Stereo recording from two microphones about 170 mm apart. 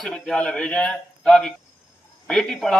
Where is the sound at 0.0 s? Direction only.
Centre (ahead or behind).